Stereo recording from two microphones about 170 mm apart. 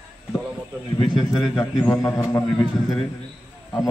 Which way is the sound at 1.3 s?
5° left (ahead or behind).